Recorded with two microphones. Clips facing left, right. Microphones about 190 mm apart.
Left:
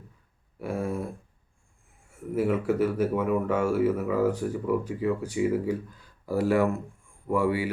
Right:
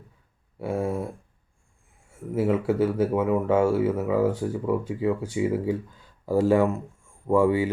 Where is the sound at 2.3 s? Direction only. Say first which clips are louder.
Right 2 dB; 25° right (ahead or behind).